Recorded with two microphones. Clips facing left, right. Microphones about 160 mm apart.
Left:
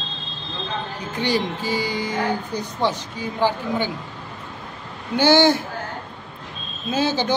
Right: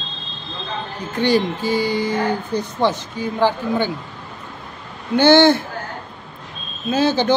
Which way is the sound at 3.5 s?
15° left (ahead or behind).